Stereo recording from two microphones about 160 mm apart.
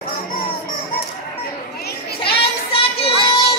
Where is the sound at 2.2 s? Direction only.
35° left (ahead or behind).